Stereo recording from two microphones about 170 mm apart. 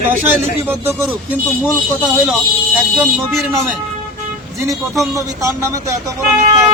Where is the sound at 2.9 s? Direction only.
Centre (ahead or behind).